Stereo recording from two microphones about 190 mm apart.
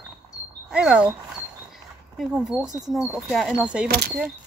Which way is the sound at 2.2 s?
5° right (ahead or behind).